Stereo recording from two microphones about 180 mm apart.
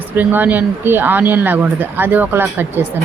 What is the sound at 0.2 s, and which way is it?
Speech, 10° right (ahead or behind).